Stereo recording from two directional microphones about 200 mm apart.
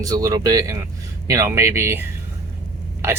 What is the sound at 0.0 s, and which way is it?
Speech, 15° right (ahead or behind).